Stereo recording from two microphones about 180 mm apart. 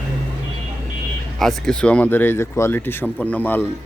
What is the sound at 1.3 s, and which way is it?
Speech, centre (ahead or behind).